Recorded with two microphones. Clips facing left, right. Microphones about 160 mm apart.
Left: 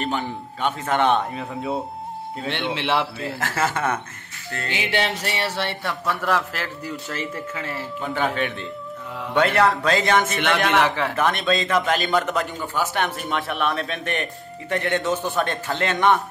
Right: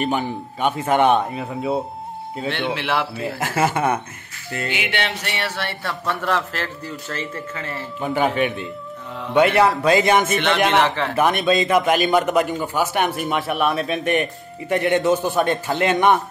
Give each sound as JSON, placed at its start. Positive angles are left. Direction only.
{"t": 0.0, "sound": "speech", "side_deg": -15}
{"t": 2.5, "sound": "speech", "side_deg": 25}
{"t": 3.3, "sound": "speech", "side_deg": -15}
{"t": 4.6, "sound": "music", "side_deg": 30}
{"t": 5.6, "sound": "speech", "side_deg": 25}
{"t": 6.0, "sound": "a man's voice", "side_deg": 5}
{"t": 8.0, "sound": "speech", "side_deg": -15}